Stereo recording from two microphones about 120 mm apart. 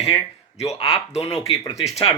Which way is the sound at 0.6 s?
60° left (ahead or behind).